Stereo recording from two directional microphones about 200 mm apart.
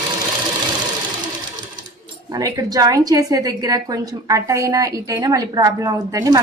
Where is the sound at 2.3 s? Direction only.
20° right (ahead or behind).